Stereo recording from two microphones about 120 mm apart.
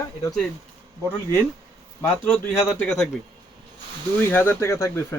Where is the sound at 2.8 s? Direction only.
5° left (ahead or behind).